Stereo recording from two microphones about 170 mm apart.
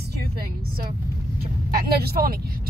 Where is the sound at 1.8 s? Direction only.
65° right (ahead or behind).